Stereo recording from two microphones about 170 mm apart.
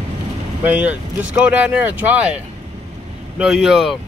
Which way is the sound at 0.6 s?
10° right (ahead or behind).